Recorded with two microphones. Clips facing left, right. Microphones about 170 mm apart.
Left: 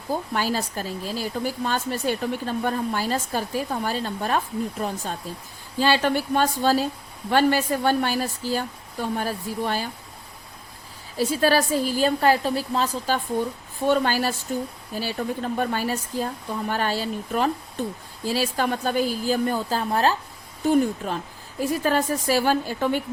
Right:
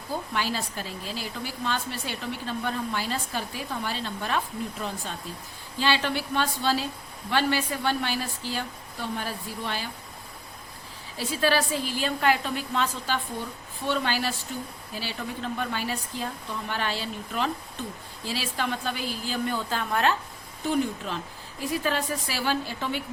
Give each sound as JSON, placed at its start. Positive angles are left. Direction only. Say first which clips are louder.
{"t": 0.3, "sound": "speech", "louder": "left 3 dB", "side_deg": 40}
{"t": 11.2, "sound": "a woman's voice", "louder": "left 5 dB", "side_deg": 40}
{"t": 20.7, "sound": "speech", "louder": "left 6 dB", "side_deg": 45}